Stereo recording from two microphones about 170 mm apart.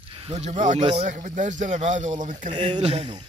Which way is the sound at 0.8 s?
35° right (ahead or behind).